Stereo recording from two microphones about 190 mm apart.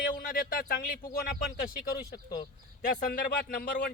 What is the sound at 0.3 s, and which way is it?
Speech, 50° left (ahead or behind).